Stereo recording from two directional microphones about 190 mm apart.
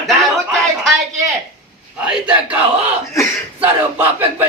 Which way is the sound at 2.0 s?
5° right (ahead or behind).